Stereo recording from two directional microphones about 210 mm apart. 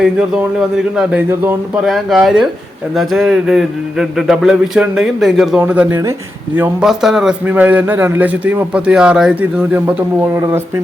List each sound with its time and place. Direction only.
0.9 s a man's voice: 10° right (ahead or behind)